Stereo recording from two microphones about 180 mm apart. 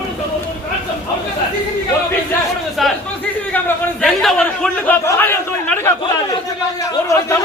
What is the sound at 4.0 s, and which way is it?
A man's voice, centre (ahead or behind).